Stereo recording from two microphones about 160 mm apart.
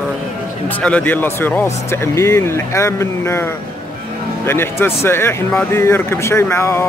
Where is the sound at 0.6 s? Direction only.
10° left (ahead or behind).